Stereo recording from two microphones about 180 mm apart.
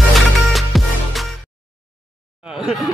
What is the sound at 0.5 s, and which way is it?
Music, centre (ahead or behind).